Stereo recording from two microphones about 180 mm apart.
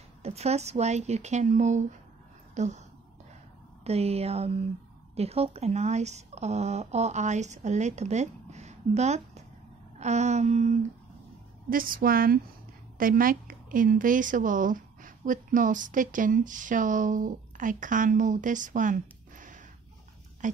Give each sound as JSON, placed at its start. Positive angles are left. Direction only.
{"t": 0.2, "sound": "a woman's voice", "side_deg": -35}
{"t": 3.8, "sound": "a woman's voice", "side_deg": -35}
{"t": 11.7, "sound": "a woman's voice", "side_deg": -50}